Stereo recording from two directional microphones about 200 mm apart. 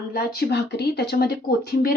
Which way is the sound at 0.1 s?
50° left (ahead or behind).